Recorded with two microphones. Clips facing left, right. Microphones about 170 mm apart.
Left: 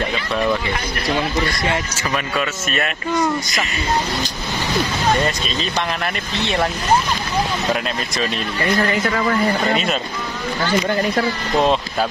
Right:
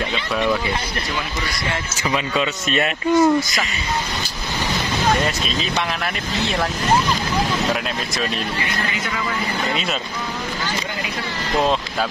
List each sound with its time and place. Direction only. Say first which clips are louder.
2.0 s speech: right 3 dB; 15° right (ahead or behind)
3.3 s speech: right 3 dB; centre (ahead or behind)
5.1 s speech: left 1 dB; centre (ahead or behind)
9.0 s speech: left 7 dB; 55° left (ahead or behind)